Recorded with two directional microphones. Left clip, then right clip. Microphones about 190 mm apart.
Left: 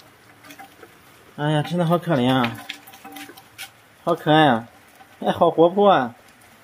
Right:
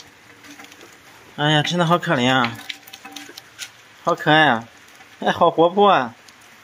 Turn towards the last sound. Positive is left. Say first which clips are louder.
# right 1 dB
turn(degrees=0)  # may be behind; listen again after turning